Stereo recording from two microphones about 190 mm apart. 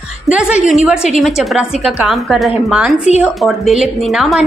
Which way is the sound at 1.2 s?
Centre (ahead or behind).